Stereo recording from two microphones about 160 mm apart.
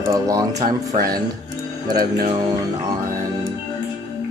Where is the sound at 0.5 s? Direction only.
50° right (ahead or behind).